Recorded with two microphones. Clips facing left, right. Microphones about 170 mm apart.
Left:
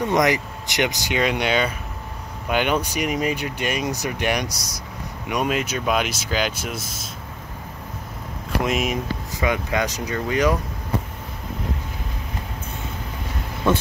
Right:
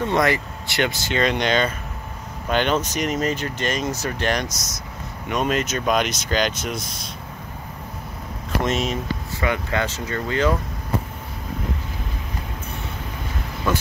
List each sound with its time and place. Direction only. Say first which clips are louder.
0.0 s speech: left 1 dB; 15° left (ahead or behind)
4.5 s speech: even; 35° left (ahead or behind)
5.3 s speech: right 1 dB; 10° left (ahead or behind)
8.6 s speech: even; 10° left (ahead or behind)